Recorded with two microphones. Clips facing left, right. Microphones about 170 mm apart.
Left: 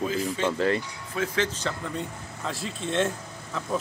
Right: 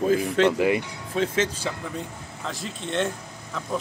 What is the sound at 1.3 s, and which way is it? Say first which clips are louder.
Speech: right 2 dB; 10° right (ahead or behind).